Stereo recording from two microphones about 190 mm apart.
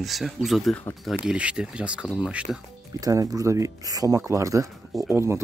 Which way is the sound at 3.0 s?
20° right (ahead or behind).